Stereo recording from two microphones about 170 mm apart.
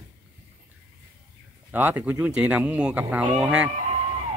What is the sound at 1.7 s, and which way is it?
Speech, 10° right (ahead or behind).